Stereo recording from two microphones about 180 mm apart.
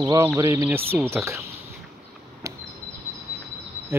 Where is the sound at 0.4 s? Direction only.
20° right (ahead or behind).